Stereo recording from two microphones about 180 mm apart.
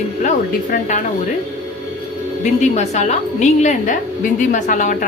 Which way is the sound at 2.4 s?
40° left (ahead or behind).